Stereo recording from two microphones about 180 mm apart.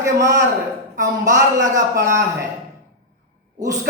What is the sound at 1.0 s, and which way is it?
A woman's voice, 20° right (ahead or behind).